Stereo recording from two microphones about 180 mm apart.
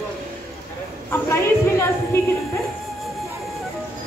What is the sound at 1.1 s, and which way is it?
Speech, 15° left (ahead or behind).